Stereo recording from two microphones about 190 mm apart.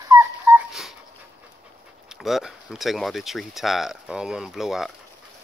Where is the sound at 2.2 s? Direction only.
Centre (ahead or behind).